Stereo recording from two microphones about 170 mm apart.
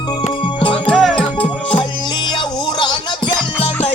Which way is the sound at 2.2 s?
25° left (ahead or behind).